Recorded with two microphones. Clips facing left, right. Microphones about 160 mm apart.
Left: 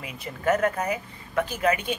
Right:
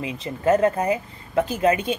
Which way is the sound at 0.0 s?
25° right (ahead or behind).